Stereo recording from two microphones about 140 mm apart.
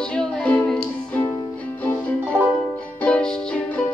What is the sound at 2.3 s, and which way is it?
Music, 20° right (ahead or behind).